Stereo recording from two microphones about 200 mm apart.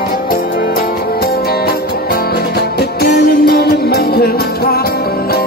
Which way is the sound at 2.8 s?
55° left (ahead or behind).